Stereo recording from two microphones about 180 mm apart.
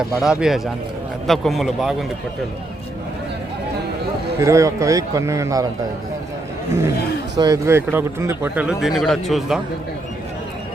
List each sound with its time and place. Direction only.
0.2 s speech: 5° right (ahead or behind)
4.4 s speech: 15° right (ahead or behind)
7.3 s speech: 20° right (ahead or behind); by 9.6 s centre (ahead or behind)